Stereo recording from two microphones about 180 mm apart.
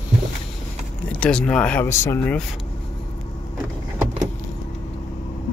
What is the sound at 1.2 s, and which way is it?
Speech, 5° left (ahead or behind).